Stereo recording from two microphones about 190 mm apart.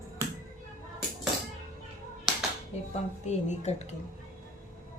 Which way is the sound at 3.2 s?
35° left (ahead or behind).